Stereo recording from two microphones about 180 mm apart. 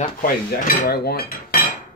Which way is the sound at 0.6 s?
55° left (ahead or behind).